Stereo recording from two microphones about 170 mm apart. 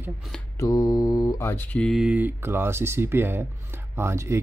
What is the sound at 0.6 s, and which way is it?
Speech, 20° left (ahead or behind).